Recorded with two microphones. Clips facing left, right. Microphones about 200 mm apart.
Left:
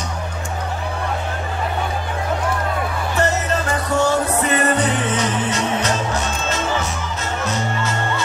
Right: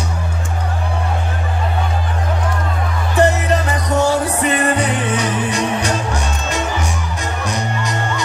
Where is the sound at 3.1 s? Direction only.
15° right (ahead or behind).